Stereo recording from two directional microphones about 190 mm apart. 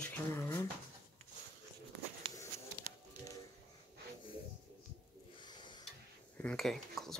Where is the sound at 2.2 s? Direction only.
25° right (ahead or behind).